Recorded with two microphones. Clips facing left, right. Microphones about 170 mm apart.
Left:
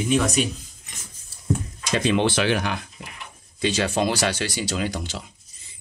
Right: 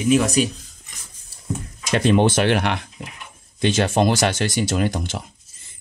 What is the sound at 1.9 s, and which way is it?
Speech, 50° right (ahead or behind).